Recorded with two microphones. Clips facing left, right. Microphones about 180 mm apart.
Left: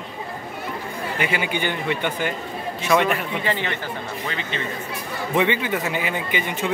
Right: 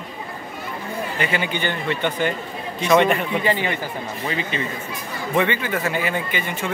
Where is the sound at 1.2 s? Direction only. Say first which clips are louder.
Even; 10° left (ahead or behind).